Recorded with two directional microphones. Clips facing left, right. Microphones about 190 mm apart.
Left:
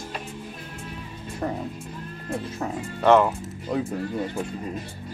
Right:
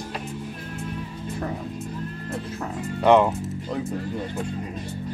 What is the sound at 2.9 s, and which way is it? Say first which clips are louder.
Speech: right 1 dB; 15° right (ahead or behind).